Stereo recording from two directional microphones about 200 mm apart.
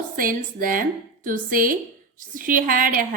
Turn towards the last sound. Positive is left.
turn(degrees=-45)  # may be behind; listen again after turning